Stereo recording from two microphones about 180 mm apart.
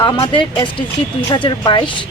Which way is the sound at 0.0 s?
25° left (ahead or behind).